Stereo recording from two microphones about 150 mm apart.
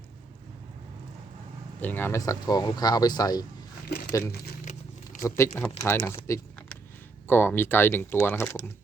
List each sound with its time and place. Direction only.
1.8 s speech: 15° left (ahead or behind)
3.8 s speech: 90° left
5.4 s speech: 20° left (ahead or behind)